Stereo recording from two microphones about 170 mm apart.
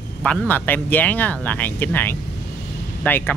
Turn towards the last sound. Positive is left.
turn(degrees=10)  # may be behind; listen again after turning